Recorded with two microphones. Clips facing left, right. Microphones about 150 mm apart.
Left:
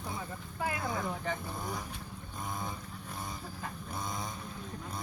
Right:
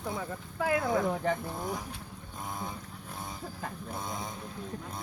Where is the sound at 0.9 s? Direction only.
55° right (ahead or behind).